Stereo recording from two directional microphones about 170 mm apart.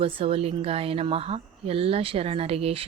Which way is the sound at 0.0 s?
35° right (ahead or behind).